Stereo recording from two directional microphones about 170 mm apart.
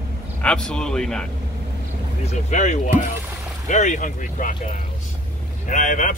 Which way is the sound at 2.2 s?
45° left (ahead or behind).